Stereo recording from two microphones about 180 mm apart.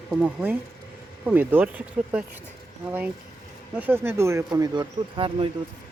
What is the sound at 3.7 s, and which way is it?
Speech, 10° right (ahead or behind).